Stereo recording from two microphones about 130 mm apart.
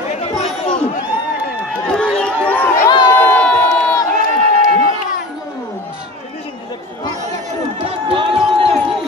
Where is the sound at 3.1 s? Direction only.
15° left (ahead or behind).